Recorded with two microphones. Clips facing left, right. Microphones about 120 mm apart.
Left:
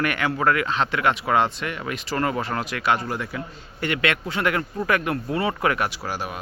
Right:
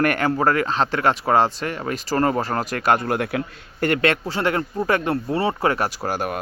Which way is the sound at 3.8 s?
40° right (ahead or behind).